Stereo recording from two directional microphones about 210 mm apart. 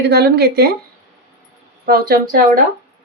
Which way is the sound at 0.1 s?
50° right (ahead or behind).